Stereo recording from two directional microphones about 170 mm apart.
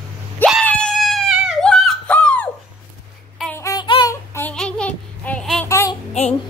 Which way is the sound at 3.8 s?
30° left (ahead or behind).